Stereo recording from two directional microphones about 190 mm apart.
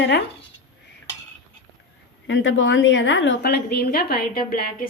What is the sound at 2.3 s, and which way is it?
A woman's voice, 80° left.